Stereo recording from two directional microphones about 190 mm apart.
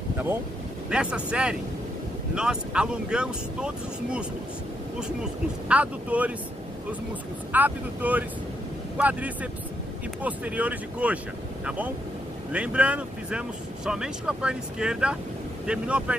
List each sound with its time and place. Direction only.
0.8 s speech: 5° right (ahead or behind)
5.7 s speech: 5° right (ahead or behind)
7.5 s speech: 10° right (ahead or behind)